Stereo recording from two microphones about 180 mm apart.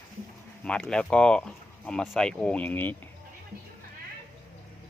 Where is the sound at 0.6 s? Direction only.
5° left (ahead or behind).